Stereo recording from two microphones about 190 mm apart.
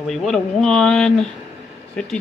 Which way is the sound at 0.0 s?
Centre (ahead or behind).